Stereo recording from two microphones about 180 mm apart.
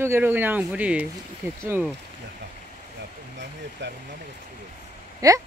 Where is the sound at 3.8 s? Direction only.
75° right (ahead or behind).